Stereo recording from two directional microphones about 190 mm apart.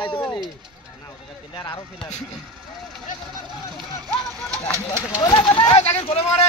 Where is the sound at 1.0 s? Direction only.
20° left (ahead or behind).